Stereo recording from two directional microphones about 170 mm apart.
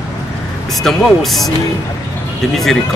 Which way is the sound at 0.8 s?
Centre (ahead or behind).